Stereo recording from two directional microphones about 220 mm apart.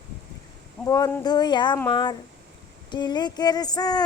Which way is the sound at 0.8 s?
15° left (ahead or behind).